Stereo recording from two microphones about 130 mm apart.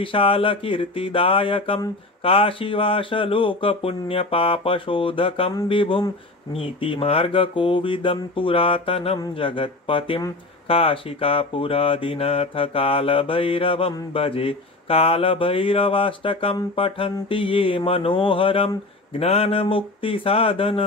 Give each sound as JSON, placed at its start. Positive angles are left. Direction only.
{"t": 0.0, "sound": "speech", "side_deg": 45}